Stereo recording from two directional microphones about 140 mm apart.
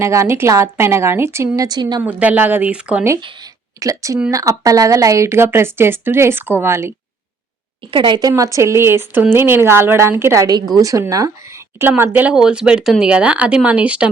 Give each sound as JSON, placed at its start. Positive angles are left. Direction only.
{"t": 0.0, "sound": "a woman's voice", "side_deg": -20}
{"t": 2.0, "sound": "speech", "side_deg": -10}
{"t": 3.2, "sound": "speech", "side_deg": -30}
{"t": 7.9, "sound": "a woman's voice", "side_deg": -35}
{"t": 8.3, "sound": "a woman's voice", "side_deg": -20}